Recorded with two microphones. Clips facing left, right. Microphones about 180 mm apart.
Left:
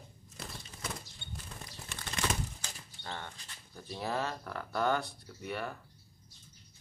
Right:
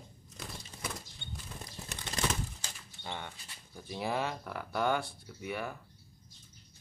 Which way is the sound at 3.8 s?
10° right (ahead or behind).